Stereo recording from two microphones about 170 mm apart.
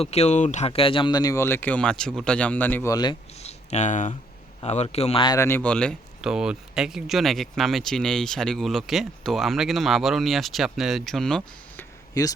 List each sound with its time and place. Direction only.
0.0 s speech: 40° left (ahead or behind); by 3.2 s 20° left (ahead or behind)
3.3 s a sound: 40° left (ahead or behind)
4.6 s speech: 40° left (ahead or behind); by 11.9 s 5° left (ahead or behind)
12.1 s speech: 20° left (ahead or behind)